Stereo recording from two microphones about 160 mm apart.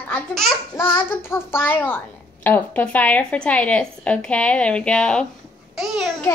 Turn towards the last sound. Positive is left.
turn(degrees=0)  # may be behind; listen again after turning